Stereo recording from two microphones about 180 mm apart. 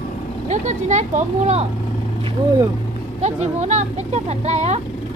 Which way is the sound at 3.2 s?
40° right (ahead or behind).